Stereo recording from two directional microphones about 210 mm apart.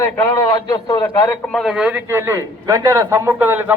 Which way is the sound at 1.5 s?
Centre (ahead or behind).